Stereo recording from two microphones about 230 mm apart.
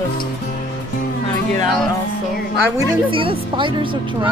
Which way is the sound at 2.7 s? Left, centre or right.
Right.